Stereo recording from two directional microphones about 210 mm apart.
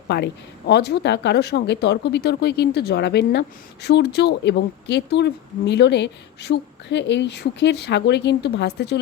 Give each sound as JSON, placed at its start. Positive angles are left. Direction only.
{"t": 0.7, "sound": "speech", "side_deg": 55}